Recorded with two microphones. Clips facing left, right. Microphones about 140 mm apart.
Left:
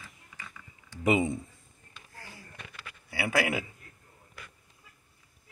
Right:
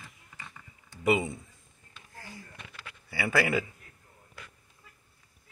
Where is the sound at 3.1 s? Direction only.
15° left (ahead or behind).